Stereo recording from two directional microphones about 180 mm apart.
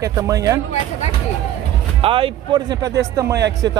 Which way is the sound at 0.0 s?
20° right (ahead or behind).